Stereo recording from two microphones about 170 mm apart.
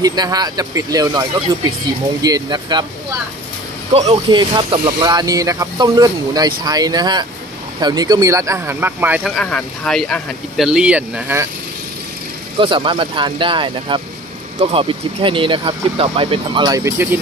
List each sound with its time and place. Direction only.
0.0 s speech: 25° right (ahead or behind)
3.9 s speech: 35° right (ahead or behind); by 9.2 s 10° right (ahead or behind)
9.2 s speech: 5° left (ahead or behind)
12.5 s speech: 30° right (ahead or behind)